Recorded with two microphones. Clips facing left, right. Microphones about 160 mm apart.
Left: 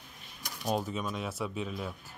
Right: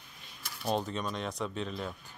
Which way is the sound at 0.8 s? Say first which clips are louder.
Even; 5° left (ahead or behind).